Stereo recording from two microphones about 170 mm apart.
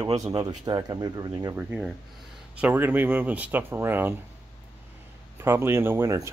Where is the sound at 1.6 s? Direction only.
5° right (ahead or behind).